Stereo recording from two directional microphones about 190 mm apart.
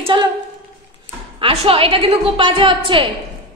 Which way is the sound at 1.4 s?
30° right (ahead or behind).